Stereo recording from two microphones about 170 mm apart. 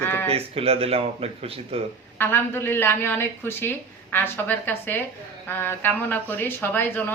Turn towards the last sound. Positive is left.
turn(degrees=10)  # may be behind; listen again after turning